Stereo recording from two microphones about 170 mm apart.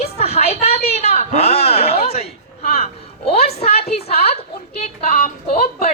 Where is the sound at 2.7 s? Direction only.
40° left (ahead or behind).